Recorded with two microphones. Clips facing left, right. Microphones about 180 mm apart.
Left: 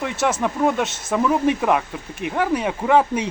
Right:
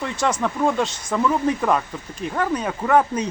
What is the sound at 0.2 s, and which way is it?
Speech, 5° left (ahead or behind).